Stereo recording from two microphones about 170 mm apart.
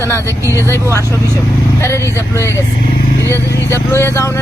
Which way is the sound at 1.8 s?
15° left (ahead or behind).